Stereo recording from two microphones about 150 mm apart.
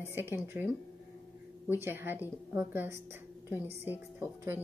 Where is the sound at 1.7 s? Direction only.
15° right (ahead or behind).